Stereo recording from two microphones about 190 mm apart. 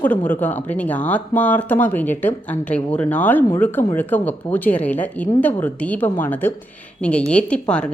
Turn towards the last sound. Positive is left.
turn(degrees=5)  # may be behind; listen again after turning